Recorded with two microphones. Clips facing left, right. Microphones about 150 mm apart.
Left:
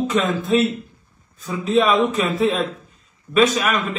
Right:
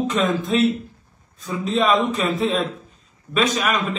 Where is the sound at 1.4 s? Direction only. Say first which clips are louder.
Left 3 dB; centre (ahead or behind).